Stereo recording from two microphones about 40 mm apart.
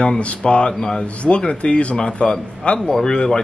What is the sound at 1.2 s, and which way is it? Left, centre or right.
A man's voice, left.